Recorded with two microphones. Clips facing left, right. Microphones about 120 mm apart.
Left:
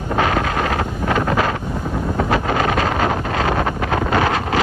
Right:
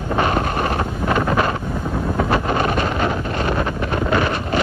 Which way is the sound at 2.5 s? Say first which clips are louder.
Left 1 dB; 65° left (ahead or behind).